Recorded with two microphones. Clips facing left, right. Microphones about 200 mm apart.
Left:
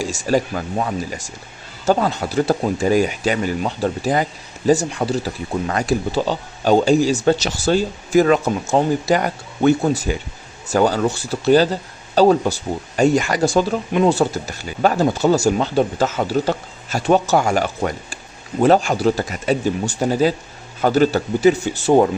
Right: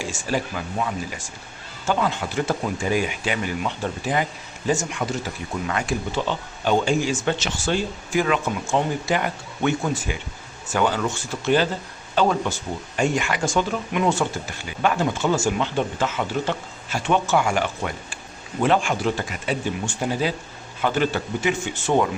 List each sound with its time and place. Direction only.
0.0 s speech: 40° left (ahead or behind)